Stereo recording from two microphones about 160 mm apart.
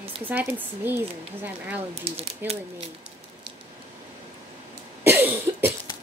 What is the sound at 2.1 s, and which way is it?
Speech, 40° right (ahead or behind).